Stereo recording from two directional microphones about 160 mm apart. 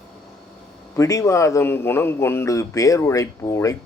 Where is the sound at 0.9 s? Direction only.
20° left (ahead or behind).